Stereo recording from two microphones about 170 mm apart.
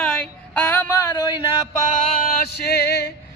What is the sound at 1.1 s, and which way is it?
Speech, 25° left (ahead or behind).